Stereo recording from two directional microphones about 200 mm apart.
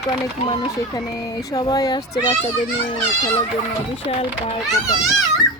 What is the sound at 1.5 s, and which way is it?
Speech, 20° left (ahead or behind).